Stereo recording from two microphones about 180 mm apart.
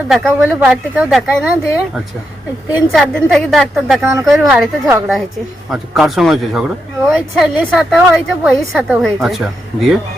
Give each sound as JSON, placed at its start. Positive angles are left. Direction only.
{"t": 0.1, "sound": "speech", "side_deg": 0}
{"t": 2.9, "sound": "speech", "side_deg": 0}
{"t": 4.0, "sound": "a woman's voice", "side_deg": -15}
{"t": 4.4, "sound": "a woman's voice", "side_deg": -5}
{"t": 5.7, "sound": "speech", "side_deg": 0}